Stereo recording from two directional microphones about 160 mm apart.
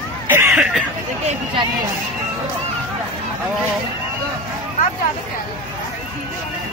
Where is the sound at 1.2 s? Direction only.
30° right (ahead or behind).